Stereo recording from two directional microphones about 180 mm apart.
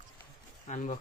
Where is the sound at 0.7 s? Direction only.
40° left (ahead or behind).